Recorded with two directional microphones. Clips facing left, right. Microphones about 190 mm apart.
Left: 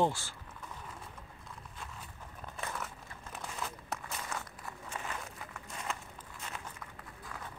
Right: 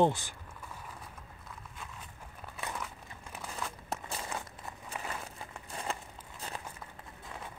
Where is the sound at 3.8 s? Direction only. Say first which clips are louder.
Right 2 dB; 30° right (ahead or behind).